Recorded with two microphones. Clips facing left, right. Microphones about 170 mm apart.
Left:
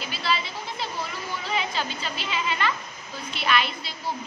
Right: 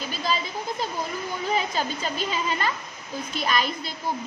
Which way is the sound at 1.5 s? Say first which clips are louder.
Right 3 dB; 45° right (ahead or behind).